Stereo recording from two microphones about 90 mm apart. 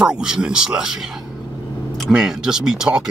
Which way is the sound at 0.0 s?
5° right (ahead or behind).